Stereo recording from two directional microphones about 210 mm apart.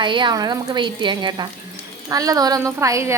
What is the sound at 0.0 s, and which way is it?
A woman's voice, 20° right (ahead or behind).